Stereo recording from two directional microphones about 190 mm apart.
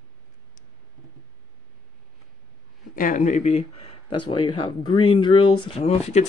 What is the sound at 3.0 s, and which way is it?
Speech, 40° left (ahead or behind).